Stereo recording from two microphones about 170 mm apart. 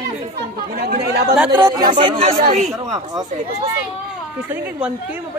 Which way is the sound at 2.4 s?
50° right (ahead or behind).